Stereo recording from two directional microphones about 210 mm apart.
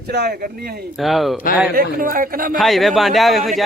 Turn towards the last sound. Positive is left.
turn(degrees=0)  # may be behind; listen again after turning